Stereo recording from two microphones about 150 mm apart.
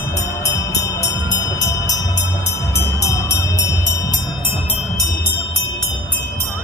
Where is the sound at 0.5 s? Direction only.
25° left (ahead or behind).